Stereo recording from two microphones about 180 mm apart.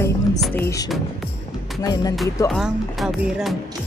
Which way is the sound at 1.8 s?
20° left (ahead or behind).